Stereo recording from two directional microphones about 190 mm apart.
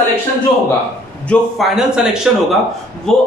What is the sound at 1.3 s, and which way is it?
A man's voice, centre (ahead or behind).